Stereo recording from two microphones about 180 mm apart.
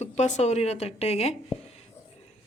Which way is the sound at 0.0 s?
40° left (ahead or behind).